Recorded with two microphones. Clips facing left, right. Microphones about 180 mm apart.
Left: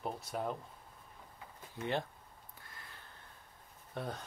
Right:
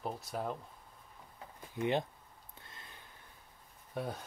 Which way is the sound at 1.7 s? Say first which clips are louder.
Right 4 dB; 15° right (ahead or behind).